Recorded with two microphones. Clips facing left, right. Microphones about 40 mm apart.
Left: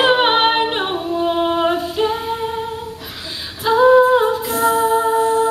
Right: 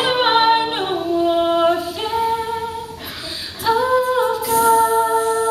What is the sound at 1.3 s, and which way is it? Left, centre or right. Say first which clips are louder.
Female singing: right 1 dB; centre.